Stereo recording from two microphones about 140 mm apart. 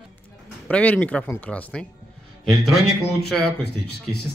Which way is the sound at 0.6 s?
10° left (ahead or behind).